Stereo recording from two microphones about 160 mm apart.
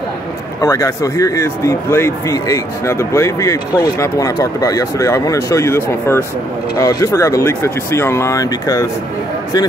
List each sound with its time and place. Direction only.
0.6 s speech: 20° left (ahead or behind)